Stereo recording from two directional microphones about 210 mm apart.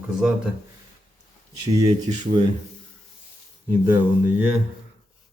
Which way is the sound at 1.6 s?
15° right (ahead or behind).